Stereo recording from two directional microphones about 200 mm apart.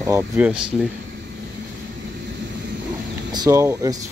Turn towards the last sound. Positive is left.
turn(degrees=-15)  # may be behind; listen again after turning